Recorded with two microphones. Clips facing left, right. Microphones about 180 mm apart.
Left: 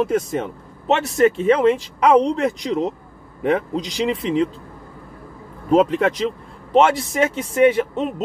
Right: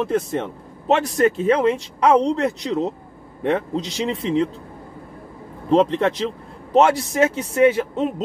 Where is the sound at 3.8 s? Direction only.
30° right (ahead or behind).